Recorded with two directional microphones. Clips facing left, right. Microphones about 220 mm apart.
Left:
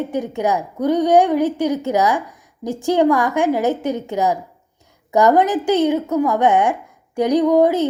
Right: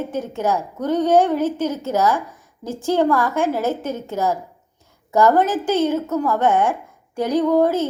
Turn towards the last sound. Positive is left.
turn(degrees=15)  # may be behind; listen again after turning